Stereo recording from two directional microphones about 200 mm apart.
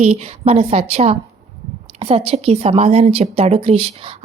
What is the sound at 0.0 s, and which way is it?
A woman's voice, 30° right (ahead or behind).